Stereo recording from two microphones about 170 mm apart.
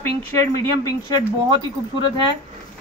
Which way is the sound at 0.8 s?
20° left (ahead or behind).